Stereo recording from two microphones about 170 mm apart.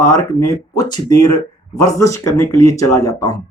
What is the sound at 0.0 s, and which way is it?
Speech, 20° left (ahead or behind).